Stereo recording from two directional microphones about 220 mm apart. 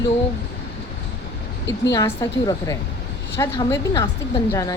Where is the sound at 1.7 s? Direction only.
15° left (ahead or behind).